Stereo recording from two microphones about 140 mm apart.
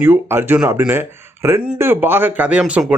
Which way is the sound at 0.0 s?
15° right (ahead or behind).